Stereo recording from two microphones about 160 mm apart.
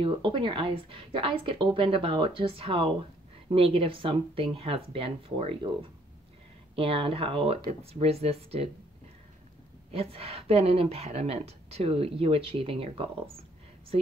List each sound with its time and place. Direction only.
0.0 s speech: 30° right (ahead or behind)
9.8 s speech: 40° right (ahead or behind)